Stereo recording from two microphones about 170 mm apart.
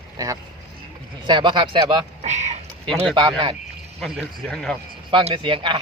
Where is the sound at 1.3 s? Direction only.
25° right (ahead or behind).